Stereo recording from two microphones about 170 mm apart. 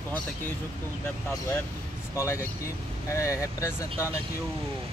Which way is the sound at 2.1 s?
15° left (ahead or behind).